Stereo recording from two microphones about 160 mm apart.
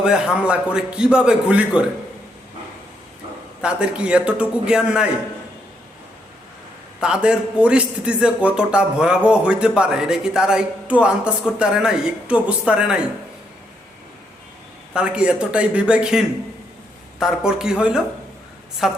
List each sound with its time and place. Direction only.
0.0 s a man's voice: 5° right (ahead or behind)
3.6 s a man's voice: 5° right (ahead or behind)
7.0 s a man's voice: 5° right (ahead or behind)
14.9 s a man's voice: 5° right (ahead or behind)